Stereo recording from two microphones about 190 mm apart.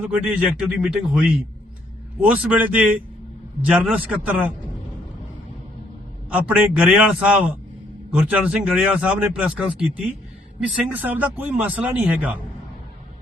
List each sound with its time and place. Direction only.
0.0 s a man's voice: 10° right (ahead or behind)
6.3 s a man's voice: 5° right (ahead or behind)
10.8 s speech: 10° right (ahead or behind)